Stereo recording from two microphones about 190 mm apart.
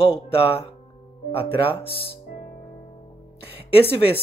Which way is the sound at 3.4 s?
30° left (ahead or behind).